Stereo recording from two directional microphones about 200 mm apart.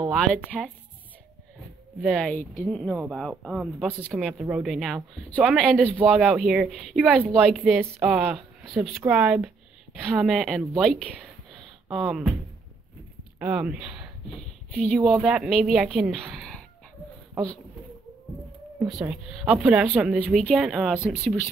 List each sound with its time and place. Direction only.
0.3 s a woman's voice: 5° left (ahead or behind)
2.0 s speech: centre (ahead or behind)
13.4 s speech: 5° right (ahead or behind)
18.9 s a woman's voice: centre (ahead or behind)